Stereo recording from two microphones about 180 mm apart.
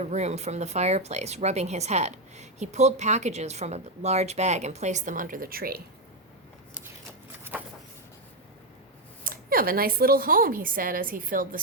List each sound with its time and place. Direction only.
0.0 s speech: 40° right (ahead or behind); by 5.8 s 55° right (ahead or behind)
9.2 s speech: 55° right (ahead or behind)